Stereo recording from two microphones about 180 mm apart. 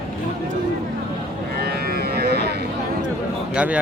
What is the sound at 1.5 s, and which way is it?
Livestock, 60° right (ahead or behind).